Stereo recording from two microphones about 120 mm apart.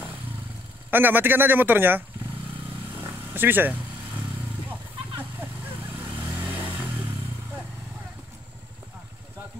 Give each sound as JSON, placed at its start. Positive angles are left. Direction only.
{"t": 0.8, "sound": "speech", "side_deg": -15}
{"t": 3.0, "sound": "a sound", "side_deg": -15}
{"t": 6.2, "sound": "vehicle", "side_deg": -15}